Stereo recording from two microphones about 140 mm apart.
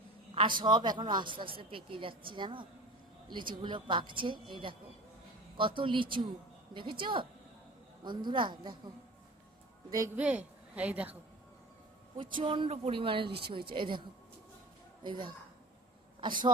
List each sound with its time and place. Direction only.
0.3 s a woman's voice: 35° right (ahead or behind)
10.2 s a woman's voice: 10° right (ahead or behind)
12.1 s a woman's voice: 40° right (ahead or behind)
15.0 s a woman's voice: 35° right (ahead or behind)